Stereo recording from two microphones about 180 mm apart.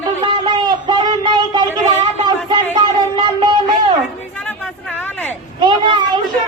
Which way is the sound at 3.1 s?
25° right (ahead or behind).